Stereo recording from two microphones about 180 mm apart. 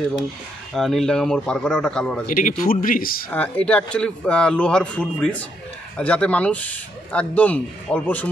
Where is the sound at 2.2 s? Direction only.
50° left (ahead or behind).